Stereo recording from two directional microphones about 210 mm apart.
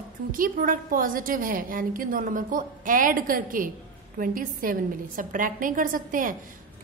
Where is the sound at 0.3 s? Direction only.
40° right (ahead or behind).